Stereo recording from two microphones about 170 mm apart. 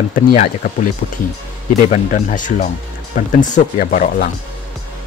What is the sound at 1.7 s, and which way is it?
Speech, 50° left (ahead or behind).